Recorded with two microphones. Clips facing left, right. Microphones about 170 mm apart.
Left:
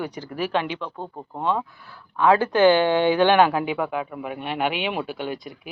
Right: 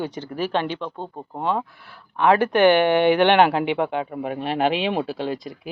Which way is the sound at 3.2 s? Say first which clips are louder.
Right 1 dB; 25° right (ahead or behind).